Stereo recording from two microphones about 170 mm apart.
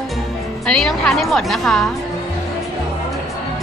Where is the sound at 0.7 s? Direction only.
5° left (ahead or behind).